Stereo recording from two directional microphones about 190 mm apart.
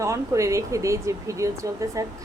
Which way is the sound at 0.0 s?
15° right (ahead or behind).